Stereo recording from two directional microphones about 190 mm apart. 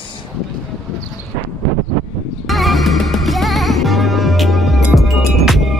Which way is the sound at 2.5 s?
Centre (ahead or behind).